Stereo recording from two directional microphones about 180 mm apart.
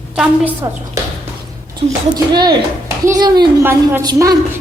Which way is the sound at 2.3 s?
25° right (ahead or behind).